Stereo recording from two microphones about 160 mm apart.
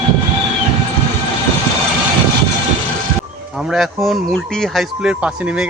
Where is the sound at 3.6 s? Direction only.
Centre (ahead or behind).